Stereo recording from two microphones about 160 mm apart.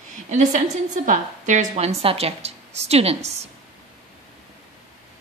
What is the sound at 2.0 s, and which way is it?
A woman's voice, 40° right (ahead or behind).